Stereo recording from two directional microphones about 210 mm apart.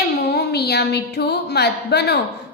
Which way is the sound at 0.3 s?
50° left (ahead or behind).